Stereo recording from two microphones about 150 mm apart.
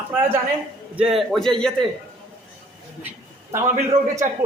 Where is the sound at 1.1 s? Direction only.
Centre (ahead or behind).